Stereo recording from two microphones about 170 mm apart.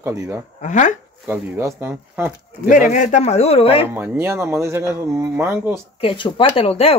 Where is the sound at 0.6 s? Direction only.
45° left (ahead or behind).